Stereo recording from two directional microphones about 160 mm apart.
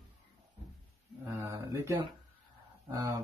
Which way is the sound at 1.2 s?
15° right (ahead or behind).